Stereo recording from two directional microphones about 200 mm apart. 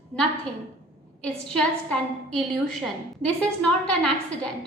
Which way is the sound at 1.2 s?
5° left (ahead or behind).